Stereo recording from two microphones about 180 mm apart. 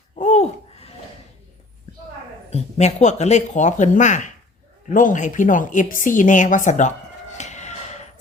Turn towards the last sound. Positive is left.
turn(degrees=40)  # may be behind; listen again after turning